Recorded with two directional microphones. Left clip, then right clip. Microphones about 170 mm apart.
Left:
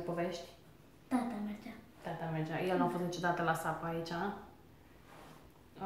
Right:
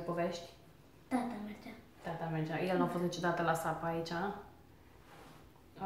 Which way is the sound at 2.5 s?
10° right (ahead or behind).